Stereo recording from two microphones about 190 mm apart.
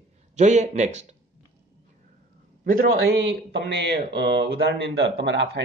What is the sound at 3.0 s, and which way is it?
Speech, 65° right (ahead or behind).